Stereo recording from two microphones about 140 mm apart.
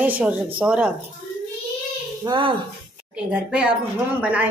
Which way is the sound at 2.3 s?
35° right (ahead or behind).